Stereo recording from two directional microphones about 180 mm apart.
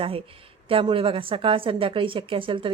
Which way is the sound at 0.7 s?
30° right (ahead or behind).